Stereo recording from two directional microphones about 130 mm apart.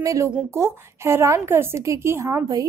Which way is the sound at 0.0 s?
25° right (ahead or behind).